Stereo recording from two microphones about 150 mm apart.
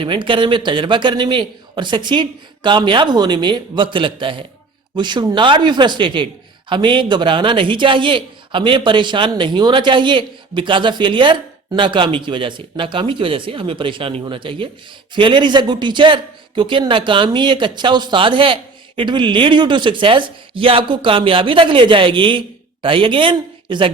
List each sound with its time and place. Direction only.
0.0 s speech: 35° right (ahead or behind)